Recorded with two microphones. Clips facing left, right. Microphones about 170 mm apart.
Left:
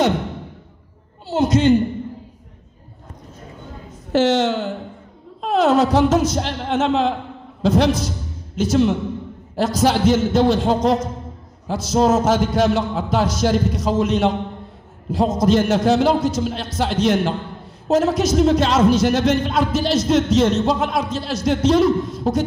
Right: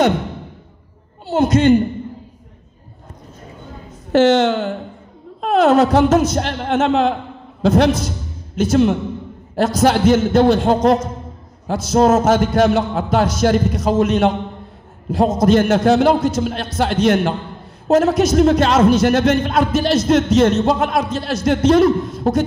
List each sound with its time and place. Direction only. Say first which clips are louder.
1.2 s a man's voice: right 2 dB; 55° right (ahead or behind)
4.1 s a man's voice: right 4 dB; 55° right (ahead or behind)